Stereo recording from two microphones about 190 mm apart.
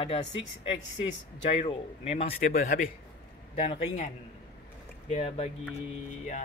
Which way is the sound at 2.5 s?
45° left (ahead or behind).